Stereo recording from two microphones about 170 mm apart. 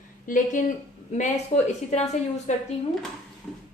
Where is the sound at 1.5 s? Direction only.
40° left (ahead or behind).